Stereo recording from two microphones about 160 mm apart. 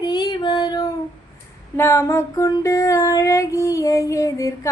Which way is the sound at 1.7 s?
15° left (ahead or behind).